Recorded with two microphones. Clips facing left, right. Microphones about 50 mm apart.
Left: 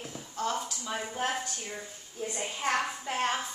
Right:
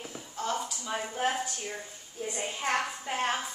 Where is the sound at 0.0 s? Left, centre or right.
Centre.